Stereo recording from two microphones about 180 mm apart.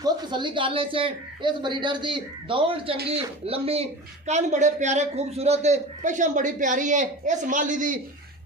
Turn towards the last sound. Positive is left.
turn(degrees=-45)  # may be behind; listen again after turning